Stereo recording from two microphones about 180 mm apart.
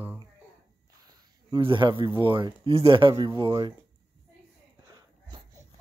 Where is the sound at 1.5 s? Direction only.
25° right (ahead or behind).